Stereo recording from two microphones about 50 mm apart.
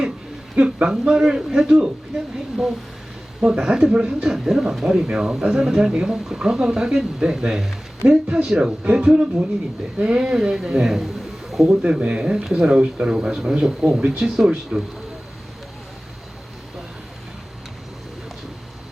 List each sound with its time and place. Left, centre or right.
0.6 s speech: centre
3.4 s a man's voice: centre
11.7 s speech: right